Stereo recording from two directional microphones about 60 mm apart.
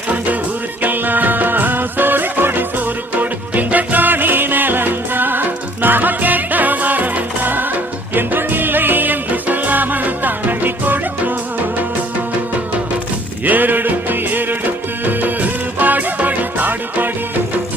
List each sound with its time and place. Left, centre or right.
0.8 s music: right
13.4 s music: right